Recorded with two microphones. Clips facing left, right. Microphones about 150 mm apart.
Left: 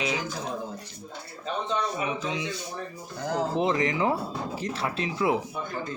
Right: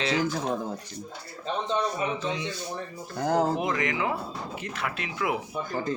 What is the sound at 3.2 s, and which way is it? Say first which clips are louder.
Speech: right 5 dB; 45° right (ahead or behind).